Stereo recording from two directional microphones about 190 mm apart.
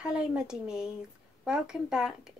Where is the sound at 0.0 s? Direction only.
5° right (ahead or behind).